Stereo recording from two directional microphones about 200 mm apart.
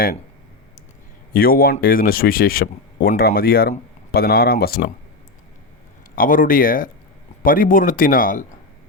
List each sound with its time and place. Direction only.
1.3 s speech: 45° left (ahead or behind)
6.1 s speech: 45° left (ahead or behind)